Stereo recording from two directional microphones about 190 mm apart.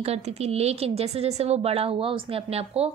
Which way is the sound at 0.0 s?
35° right (ahead or behind).